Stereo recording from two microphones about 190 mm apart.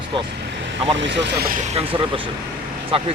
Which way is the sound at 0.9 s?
70° right (ahead or behind).